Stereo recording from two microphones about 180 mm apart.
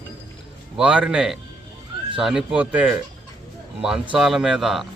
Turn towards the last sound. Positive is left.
turn(degrees=0)  # may be behind; listen again after turning